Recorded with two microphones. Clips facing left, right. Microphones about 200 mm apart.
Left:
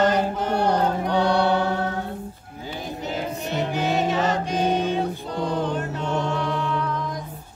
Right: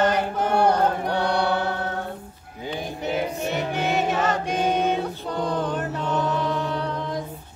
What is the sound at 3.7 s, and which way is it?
Music, 55° right (ahead or behind).